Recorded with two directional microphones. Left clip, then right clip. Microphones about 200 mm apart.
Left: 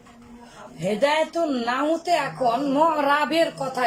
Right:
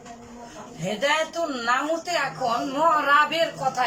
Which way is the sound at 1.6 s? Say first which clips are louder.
Left 1 dB; 20° left (ahead or behind).